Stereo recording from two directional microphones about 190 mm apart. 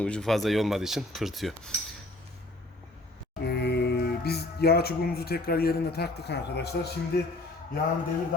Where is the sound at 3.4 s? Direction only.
60° left (ahead or behind).